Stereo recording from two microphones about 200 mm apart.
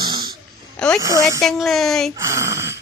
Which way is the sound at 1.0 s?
15° right (ahead or behind).